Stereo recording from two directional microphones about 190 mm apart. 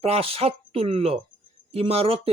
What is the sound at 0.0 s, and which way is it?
Speech, 30° right (ahead or behind).